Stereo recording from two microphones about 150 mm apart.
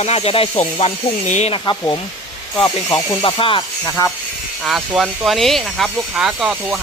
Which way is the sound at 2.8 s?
20° left (ahead or behind).